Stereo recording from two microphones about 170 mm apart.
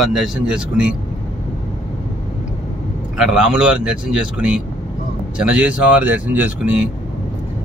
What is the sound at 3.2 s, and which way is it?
Speech, 5° right (ahead or behind).